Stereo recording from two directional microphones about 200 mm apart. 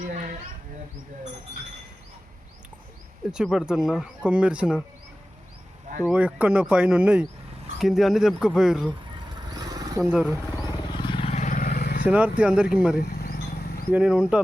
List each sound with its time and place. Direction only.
0.0 s bird: 40° right (ahead or behind)
3.3 s speech: centre (ahead or behind)
6.1 s speech: 5° right (ahead or behind)
9.5 s vehicle: 20° right (ahead or behind)
10.0 s speech: 5° right (ahead or behind)
10.6 s vehicle: 20° left (ahead or behind); by 12.0 s 50° left (ahead or behind)
12.0 s speech: 5° right (ahead or behind)
13.0 s vehicle: 50° left (ahead or behind)
13.9 s speech: 5° right (ahead or behind)